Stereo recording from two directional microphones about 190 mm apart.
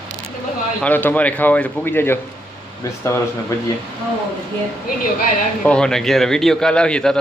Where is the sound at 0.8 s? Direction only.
10° left (ahead or behind).